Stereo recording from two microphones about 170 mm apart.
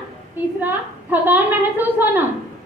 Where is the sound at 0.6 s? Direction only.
10° right (ahead or behind).